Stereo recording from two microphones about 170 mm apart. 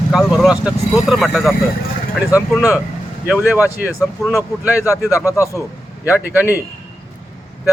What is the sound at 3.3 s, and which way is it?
Speech, 10° right (ahead or behind).